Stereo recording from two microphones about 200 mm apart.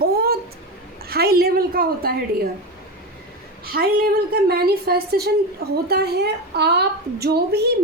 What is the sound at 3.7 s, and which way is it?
A woman's voice, 50° right (ahead or behind).